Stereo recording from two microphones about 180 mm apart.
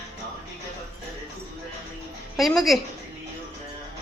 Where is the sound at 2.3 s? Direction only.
Centre (ahead or behind).